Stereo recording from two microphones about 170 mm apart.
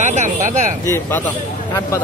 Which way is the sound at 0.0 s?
45° right (ahead or behind).